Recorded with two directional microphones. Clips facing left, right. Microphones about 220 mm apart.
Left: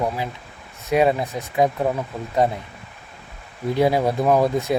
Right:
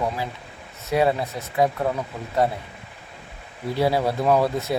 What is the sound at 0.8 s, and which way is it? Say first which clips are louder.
Speech: left 2 dB; 15° left (ahead or behind).